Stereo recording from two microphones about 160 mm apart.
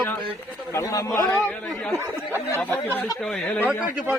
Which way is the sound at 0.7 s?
20° left (ahead or behind).